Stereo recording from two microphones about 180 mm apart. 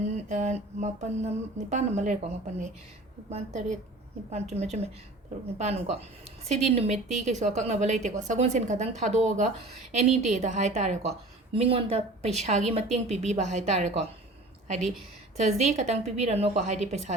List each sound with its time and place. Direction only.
0.0 s a woman's voice: 40° right (ahead or behind)
15.4 s a woman's voice: 40° right (ahead or behind)